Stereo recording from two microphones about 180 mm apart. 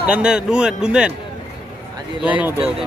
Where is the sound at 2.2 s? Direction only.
10° right (ahead or behind).